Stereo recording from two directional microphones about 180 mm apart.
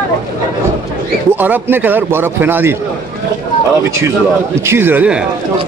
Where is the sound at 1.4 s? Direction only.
10° right (ahead or behind).